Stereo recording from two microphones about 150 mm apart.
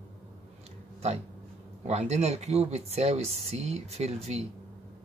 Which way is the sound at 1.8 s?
45° right (ahead or behind).